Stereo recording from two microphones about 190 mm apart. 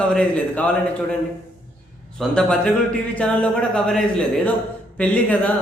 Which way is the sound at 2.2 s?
5° left (ahead or behind).